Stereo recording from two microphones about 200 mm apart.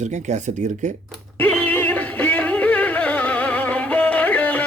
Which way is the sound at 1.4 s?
10° left (ahead or behind).